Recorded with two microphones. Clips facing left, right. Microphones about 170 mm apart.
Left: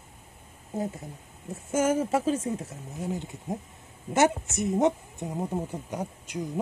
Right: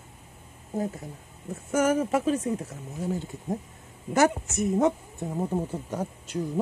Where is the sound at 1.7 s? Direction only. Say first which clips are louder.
Right 1 dB; 30° left (ahead or behind).